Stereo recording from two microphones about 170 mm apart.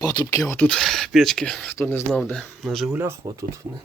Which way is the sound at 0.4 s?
5° left (ahead or behind).